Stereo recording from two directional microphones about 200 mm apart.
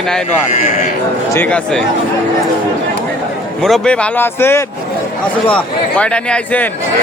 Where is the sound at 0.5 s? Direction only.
40° left (ahead or behind).